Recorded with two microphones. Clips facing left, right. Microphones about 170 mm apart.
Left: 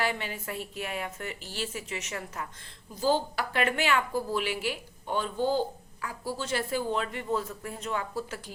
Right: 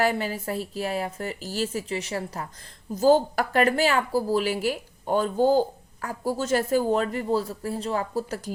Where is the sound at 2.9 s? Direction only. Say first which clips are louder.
Right 8 dB; 45° right (ahead or behind).